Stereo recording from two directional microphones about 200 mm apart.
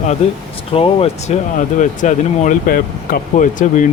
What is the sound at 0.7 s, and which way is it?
Speech, 30° left (ahead or behind).